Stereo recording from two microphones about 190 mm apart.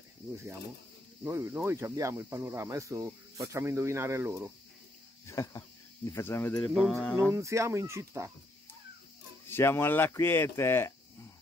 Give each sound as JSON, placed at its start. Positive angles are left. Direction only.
{"t": 1.2, "sound": "speech", "side_deg": -15}
{"t": 5.3, "sound": "speech", "side_deg": 15}
{"t": 6.7, "sound": "mantra", "side_deg": 0}
{"t": 7.3, "sound": "speech", "side_deg": -15}
{"t": 9.5, "sound": "speech", "side_deg": 10}